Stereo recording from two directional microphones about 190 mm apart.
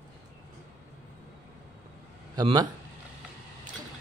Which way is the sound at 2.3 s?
20° right (ahead or behind).